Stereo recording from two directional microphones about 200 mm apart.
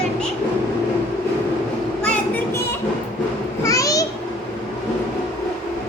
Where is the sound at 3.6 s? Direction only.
15° left (ahead or behind).